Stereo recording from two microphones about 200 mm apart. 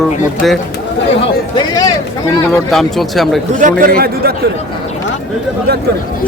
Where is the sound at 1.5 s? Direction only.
20° left (ahead or behind).